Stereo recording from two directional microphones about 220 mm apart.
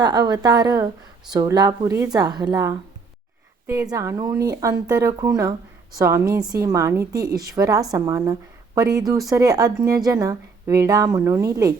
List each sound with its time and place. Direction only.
0.0 s a woman's voice: 20° right (ahead or behind)